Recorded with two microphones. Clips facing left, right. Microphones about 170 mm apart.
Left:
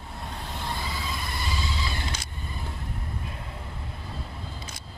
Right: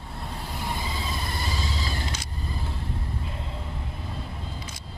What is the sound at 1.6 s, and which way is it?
Vehicle, 40° right (ahead or behind).